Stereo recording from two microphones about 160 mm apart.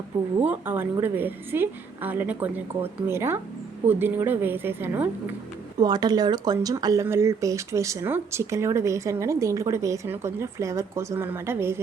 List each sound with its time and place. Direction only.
0.4 s a woman's voice: 10° right (ahead or behind)
5.8 s speech: 25° right (ahead or behind)